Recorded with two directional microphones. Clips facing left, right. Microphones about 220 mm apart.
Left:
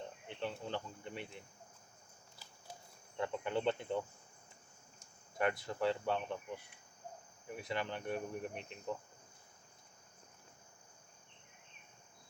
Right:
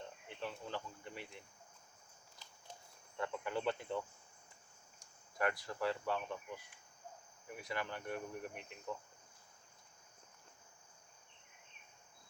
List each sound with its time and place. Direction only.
0.3 s speech: 25° left (ahead or behind)
3.2 s speech: 25° left (ahead or behind)